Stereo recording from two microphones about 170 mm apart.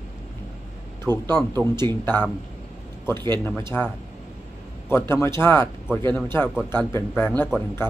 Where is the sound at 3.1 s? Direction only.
25° right (ahead or behind).